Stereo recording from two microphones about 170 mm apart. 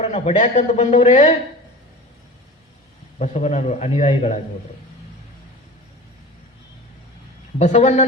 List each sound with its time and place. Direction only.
0.0 s a man's voice: 40° left (ahead or behind)
3.2 s a man's voice: 40° left (ahead or behind)
7.6 s a man's voice: 45° left (ahead or behind)